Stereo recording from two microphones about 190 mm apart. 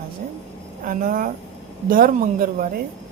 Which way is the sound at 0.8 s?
45° right (ahead or behind).